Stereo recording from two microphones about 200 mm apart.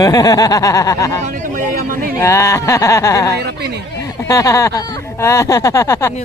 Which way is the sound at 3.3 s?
55° right (ahead or behind).